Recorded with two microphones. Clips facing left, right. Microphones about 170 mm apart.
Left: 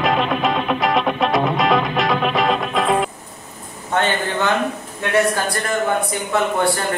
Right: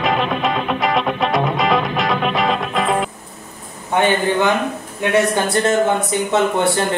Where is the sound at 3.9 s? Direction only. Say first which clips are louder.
Right 4 dB; 15° right (ahead or behind).